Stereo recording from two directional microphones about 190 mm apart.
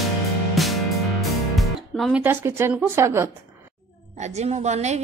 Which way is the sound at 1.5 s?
Centre (ahead or behind).